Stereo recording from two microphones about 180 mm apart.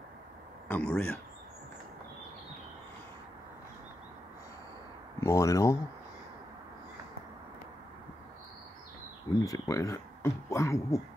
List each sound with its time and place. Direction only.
0.7 s speech: 5° left (ahead or behind)
5.2 s speech: 15° left (ahead or behind)
9.4 s speech: 20° left (ahead or behind)